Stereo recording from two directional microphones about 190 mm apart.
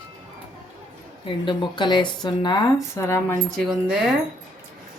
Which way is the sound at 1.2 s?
25° left (ahead or behind).